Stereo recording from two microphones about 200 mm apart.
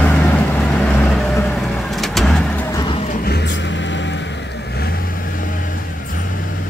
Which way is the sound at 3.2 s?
55° left (ahead or behind).